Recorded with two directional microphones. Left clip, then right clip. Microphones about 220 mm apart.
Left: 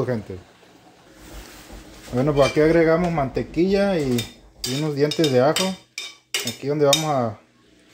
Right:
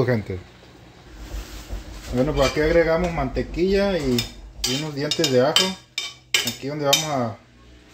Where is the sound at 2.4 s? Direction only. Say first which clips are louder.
Left 1 dB; 40° left (ahead or behind).